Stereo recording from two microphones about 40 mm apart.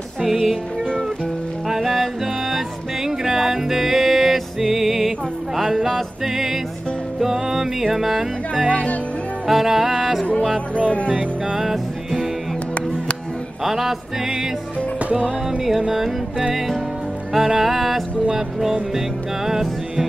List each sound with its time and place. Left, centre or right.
1.7 s music: centre
3.1 s music: centre
8.6 s speech: left
9.5 s music: centre
11.5 s music: centre
13.7 s music: centre
15.9 s music: centre